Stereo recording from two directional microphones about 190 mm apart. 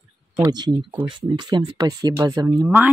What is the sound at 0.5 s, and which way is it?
Speech, 20° right (ahead or behind).